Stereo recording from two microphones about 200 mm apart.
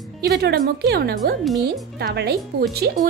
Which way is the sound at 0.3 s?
55° right (ahead or behind).